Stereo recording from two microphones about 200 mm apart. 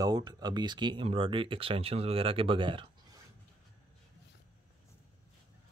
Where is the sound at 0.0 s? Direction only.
20° right (ahead or behind).